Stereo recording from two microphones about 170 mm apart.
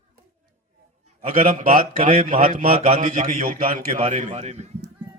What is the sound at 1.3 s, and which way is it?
A man's voice, 50° right (ahead or behind).